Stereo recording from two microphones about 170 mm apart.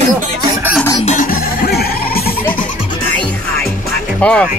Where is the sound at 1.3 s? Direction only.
65° left (ahead or behind).